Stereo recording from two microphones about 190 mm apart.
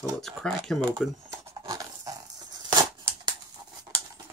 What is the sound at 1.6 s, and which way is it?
Scissors, 20° right (ahead or behind).